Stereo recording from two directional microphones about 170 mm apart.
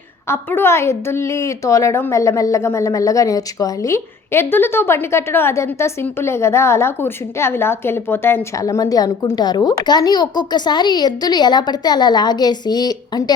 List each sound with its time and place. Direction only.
0.3 s a woman's voice: 15° left (ahead or behind)